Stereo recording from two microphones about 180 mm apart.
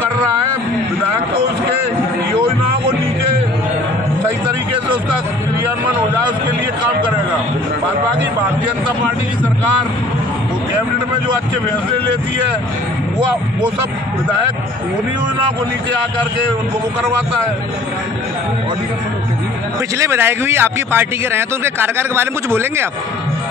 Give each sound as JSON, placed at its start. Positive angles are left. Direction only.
{"t": 20.0, "sound": "a man's voice", "side_deg": -15}